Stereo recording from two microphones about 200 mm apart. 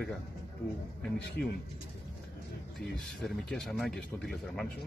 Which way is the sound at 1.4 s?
55° left (ahead or behind).